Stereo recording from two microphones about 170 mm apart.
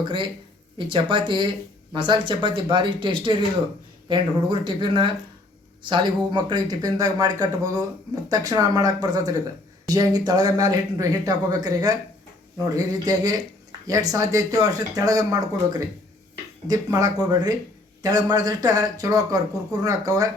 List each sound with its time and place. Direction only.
0.0 s speech: 30° right (ahead or behind)